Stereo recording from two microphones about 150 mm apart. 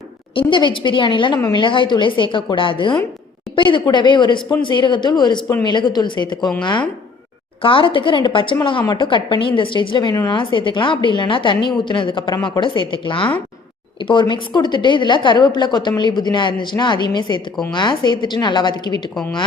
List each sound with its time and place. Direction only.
0.3 s a woman's voice: 35° left (ahead or behind)
19.1 s a woman's voice: 5° left (ahead or behind)